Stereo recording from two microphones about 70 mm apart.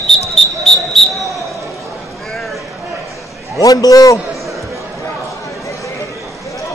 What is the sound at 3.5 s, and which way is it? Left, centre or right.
Speech, left.